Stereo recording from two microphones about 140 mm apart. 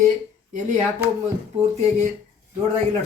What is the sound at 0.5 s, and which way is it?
Speech, 60° right (ahead or behind).